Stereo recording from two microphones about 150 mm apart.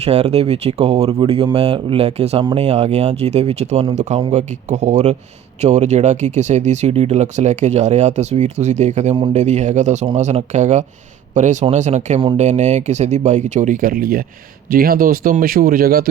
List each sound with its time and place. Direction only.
0.0 s speech: 45° right (ahead or behind); by 16.0 s 85° right